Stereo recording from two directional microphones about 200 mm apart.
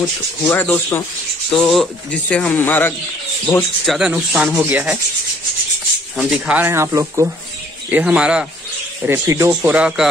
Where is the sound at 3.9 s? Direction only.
5° right (ahead or behind).